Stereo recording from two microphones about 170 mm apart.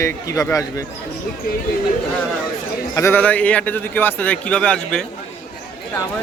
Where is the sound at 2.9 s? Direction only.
15° left (ahead or behind).